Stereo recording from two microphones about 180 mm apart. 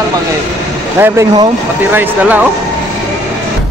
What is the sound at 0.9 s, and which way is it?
Speech, 15° right (ahead or behind).